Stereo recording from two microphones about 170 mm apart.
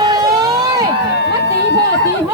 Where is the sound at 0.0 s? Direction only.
25° right (ahead or behind).